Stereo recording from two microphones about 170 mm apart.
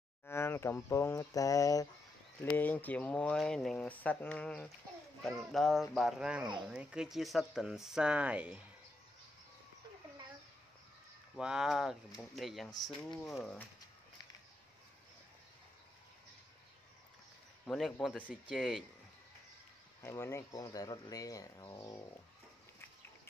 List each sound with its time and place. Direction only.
0.3 s speech: 15° left (ahead or behind); by 8.6 s 10° right (ahead or behind)
11.3 s speech: 5° right (ahead or behind)
17.6 s speech: centre (ahead or behind)
20.0 s speech: 15° left (ahead or behind)